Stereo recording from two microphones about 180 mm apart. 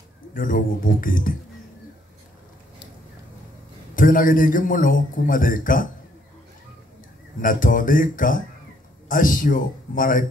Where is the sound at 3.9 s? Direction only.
50° left (ahead or behind).